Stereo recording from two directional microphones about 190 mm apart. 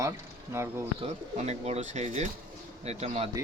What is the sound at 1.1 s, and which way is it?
Speech, 35° right (ahead or behind).